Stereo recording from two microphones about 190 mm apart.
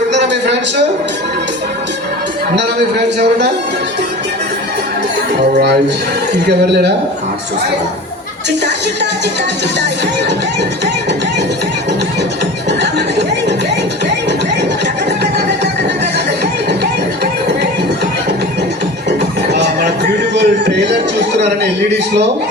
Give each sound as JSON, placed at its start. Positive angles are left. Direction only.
{"t": 0.1, "sound": "a sound", "side_deg": -65}
{"t": 5.4, "sound": "speech", "side_deg": -60}
{"t": 19.5, "sound": "music", "side_deg": -60}
{"t": 20.3, "sound": "speech", "side_deg": -60}